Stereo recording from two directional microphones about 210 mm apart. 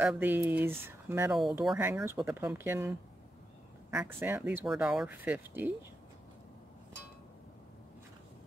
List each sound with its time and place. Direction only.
0.0 s speech: 10° right (ahead or behind)